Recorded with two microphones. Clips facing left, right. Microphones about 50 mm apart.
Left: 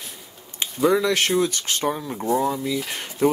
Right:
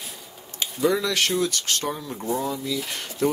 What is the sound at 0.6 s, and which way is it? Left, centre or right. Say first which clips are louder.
Speech: left 3 dB; left.